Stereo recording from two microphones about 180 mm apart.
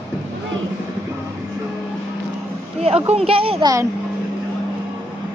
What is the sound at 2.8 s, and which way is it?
Speech, 35° right (ahead or behind).